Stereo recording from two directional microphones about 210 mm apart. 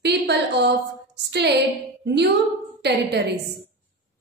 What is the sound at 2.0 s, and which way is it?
Speech, 55° right (ahead or behind).